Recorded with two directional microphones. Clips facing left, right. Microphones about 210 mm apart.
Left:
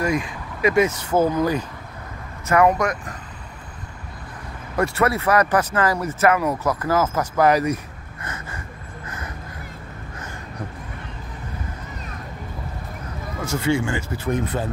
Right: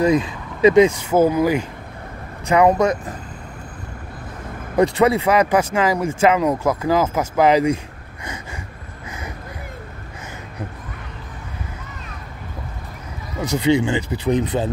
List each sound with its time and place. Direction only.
0.2 s speech: 25° right (ahead or behind)
4.7 s speech: 15° right (ahead or behind)
8.2 s gasp: 15° right (ahead or behind)
9.0 s vehicle: 10° right (ahead or behind)
13.4 s speech: 15° right (ahead or behind)